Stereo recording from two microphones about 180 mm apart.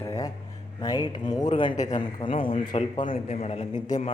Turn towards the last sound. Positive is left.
turn(degrees=30)  # may be behind; listen again after turning